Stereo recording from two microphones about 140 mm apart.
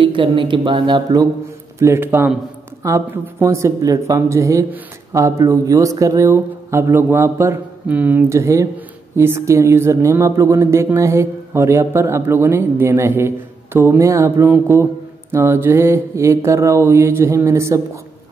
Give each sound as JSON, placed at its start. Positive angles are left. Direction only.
{"t": 0.0, "sound": "speech", "side_deg": -35}
{"t": 1.8, "sound": "a man's voice", "side_deg": -20}